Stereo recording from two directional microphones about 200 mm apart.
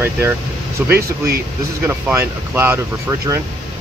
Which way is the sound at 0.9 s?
50° right (ahead or behind).